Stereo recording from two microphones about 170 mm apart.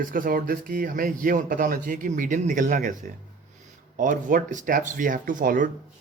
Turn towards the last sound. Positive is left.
turn(degrees=-50)  # may be behind; listen again after turning